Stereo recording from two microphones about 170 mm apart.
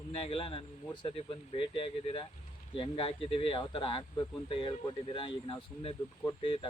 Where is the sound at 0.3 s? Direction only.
30° left (ahead or behind).